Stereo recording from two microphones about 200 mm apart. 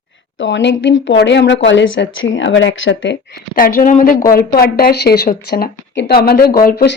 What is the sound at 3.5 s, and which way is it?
Speech, 45° left (ahead or behind).